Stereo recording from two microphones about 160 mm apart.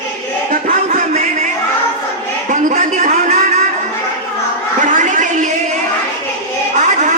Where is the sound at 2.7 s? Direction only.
55° right (ahead or behind).